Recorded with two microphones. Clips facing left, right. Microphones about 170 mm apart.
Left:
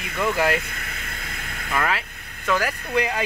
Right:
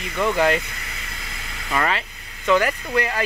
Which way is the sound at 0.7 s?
55° left (ahead or behind).